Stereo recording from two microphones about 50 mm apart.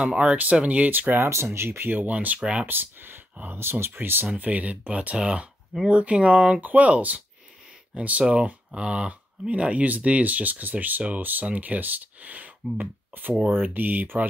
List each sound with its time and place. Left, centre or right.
0.0 s speech: centre; by 1.3 s right
1.3 s speech: right
2.1 s speech: right
2.6 s speech: right
4.4 s speech: right
6.6 s speech: right